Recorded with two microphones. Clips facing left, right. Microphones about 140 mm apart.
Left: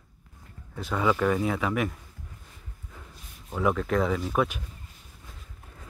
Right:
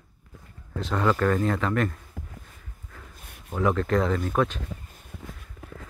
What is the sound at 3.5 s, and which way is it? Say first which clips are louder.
Speech: right 2 dB; 5° left (ahead or behind).